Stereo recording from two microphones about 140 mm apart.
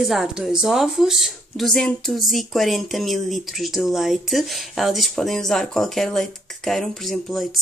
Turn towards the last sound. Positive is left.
turn(degrees=0)  # may be behind; listen again after turning